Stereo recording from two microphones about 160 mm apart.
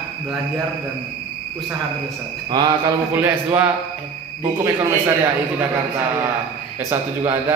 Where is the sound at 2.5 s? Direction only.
25° right (ahead or behind).